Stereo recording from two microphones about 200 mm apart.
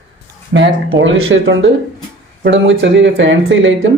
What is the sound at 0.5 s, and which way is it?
Speech, 70° right (ahead or behind).